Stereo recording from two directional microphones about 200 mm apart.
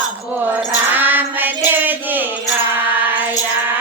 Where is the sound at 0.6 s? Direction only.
10° right (ahead or behind).